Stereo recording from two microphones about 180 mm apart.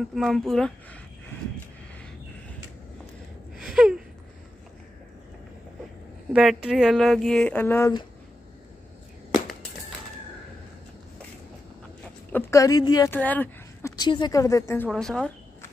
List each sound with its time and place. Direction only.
0.1 s speech: centre (ahead or behind)
3.5 s gasp: 5° right (ahead or behind)
6.3 s speech: 5° right (ahead or behind); by 7.9 s 10° left (ahead or behind)
12.3 s a woman's voice: 15° left (ahead or behind)
13.1 s a sound: 10° left (ahead or behind)
13.9 s a woman's voice: 25° left (ahead or behind)
14.9 s speech: 5° left (ahead or behind)